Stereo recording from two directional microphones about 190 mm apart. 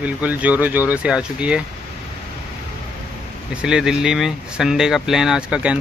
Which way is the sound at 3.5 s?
5° right (ahead or behind).